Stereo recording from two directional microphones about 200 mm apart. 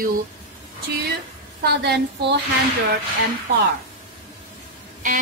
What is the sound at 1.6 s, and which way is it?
Speech, 55° right (ahead or behind).